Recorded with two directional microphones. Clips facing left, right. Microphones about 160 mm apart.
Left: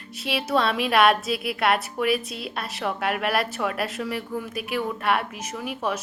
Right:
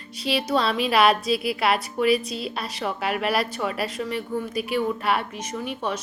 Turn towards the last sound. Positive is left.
turn(degrees=5)  # may be behind; listen again after turning